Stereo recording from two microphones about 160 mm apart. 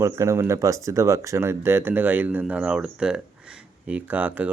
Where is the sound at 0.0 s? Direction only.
15° right (ahead or behind).